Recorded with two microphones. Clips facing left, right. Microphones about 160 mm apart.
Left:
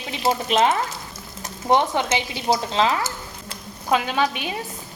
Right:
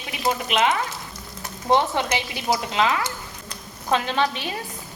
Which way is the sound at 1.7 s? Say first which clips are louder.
Left 1 dB; 20° left (ahead or behind).